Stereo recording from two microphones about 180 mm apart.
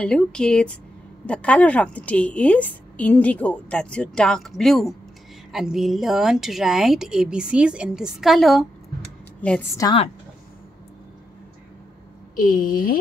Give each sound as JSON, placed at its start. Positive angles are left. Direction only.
{"t": 0.0, "sound": "a woman's voice", "side_deg": 5}
{"t": 9.8, "sound": "a woman's voice", "side_deg": 25}
{"t": 12.4, "sound": "speech", "side_deg": 50}